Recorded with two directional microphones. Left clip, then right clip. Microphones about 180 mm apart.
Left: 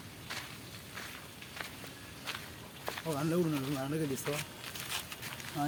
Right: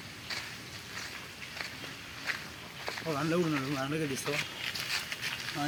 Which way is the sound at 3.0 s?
20° left (ahead or behind).